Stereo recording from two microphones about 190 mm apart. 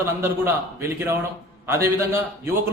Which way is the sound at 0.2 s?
15° right (ahead or behind).